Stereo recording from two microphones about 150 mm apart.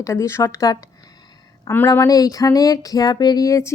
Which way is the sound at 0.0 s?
20° left (ahead or behind).